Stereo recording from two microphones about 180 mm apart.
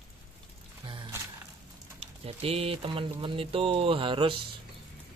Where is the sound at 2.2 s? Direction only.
35° right (ahead or behind).